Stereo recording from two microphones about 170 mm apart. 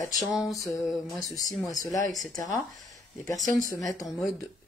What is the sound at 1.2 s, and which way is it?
Speech, 20° left (ahead or behind).